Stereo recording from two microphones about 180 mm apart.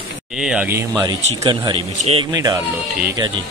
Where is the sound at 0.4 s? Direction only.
5° right (ahead or behind).